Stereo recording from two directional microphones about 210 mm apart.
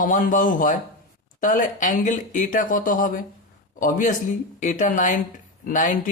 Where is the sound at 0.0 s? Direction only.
40° left (ahead or behind).